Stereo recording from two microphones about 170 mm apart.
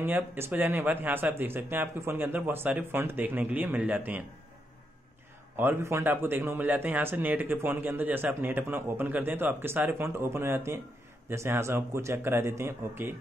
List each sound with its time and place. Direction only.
0.0 s speech: 10° right (ahead or behind)
5.6 s speech: 15° right (ahead or behind)